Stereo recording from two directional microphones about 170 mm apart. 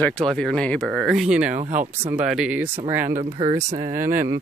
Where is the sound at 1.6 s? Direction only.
45° right (ahead or behind).